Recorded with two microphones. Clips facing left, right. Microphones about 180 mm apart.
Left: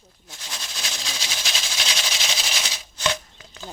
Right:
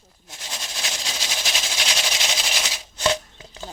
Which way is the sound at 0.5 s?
20° right (ahead or behind).